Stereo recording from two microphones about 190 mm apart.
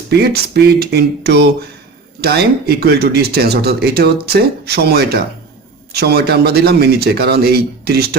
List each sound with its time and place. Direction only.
0.1 s speech: 55° right (ahead or behind)